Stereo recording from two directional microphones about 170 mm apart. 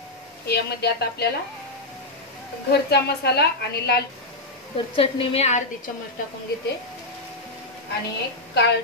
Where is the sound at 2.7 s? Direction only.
75° left (ahead or behind).